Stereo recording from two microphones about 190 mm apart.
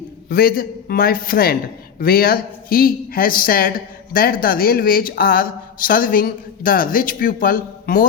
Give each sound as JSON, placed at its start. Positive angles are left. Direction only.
{"t": 0.3, "sound": "speech", "side_deg": 50}